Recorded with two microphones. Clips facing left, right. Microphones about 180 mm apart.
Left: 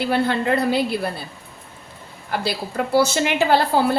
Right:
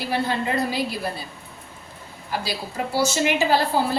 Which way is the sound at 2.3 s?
60° left (ahead or behind).